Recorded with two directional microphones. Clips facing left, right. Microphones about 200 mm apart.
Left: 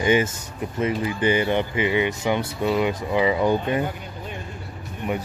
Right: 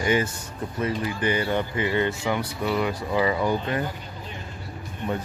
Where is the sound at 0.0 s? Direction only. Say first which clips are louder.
Left 3 dB; 20° left (ahead or behind).